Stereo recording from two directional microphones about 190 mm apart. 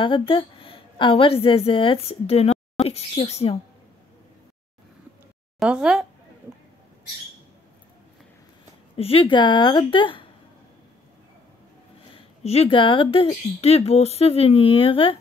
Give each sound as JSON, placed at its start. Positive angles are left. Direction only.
{"t": 0.0, "sound": "a woman's voice", "side_deg": 25}
{"t": 5.6, "sound": "speech", "side_deg": -5}
{"t": 8.9, "sound": "speech", "side_deg": 30}
{"t": 12.1, "sound": "speech", "side_deg": 30}